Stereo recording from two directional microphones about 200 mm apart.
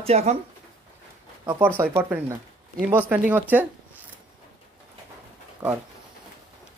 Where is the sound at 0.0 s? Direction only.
30° right (ahead or behind).